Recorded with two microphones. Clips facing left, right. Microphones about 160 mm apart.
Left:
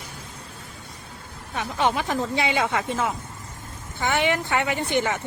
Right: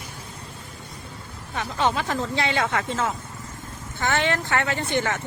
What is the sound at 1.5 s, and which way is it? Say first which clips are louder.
Speech: even; 15° left (ahead or behind).